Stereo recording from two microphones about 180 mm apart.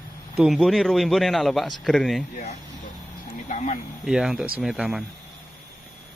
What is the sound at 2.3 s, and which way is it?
Speech, 40° left (ahead or behind).